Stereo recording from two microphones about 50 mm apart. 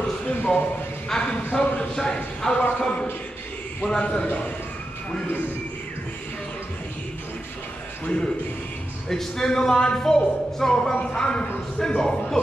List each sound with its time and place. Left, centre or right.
0.3 s a man's voice: left
8.0 s a man's voice: left
9.1 s a man's voice: centre